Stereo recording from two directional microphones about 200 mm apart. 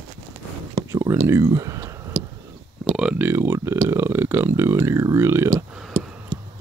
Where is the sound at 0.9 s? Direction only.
15° right (ahead or behind).